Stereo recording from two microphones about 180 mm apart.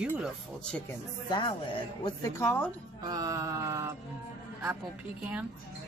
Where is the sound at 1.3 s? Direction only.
25° left (ahead or behind).